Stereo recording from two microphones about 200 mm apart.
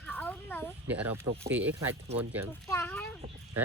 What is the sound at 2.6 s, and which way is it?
Speech, 10° left (ahead or behind).